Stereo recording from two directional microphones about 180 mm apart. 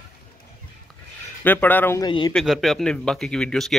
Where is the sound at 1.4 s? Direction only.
10° left (ahead or behind).